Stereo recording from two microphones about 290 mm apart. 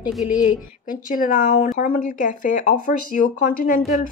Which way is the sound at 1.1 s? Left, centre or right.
Left.